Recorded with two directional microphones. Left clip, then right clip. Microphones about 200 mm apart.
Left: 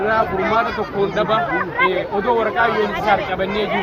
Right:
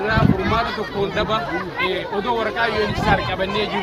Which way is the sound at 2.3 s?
10° right (ahead or behind).